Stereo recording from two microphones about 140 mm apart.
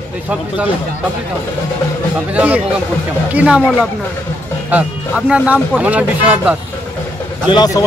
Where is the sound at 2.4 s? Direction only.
10° right (ahead or behind).